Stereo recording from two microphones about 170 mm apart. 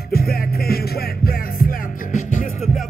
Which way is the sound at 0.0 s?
65° left (ahead or behind).